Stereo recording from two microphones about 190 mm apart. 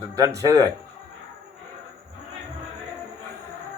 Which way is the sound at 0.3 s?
20° right (ahead or behind).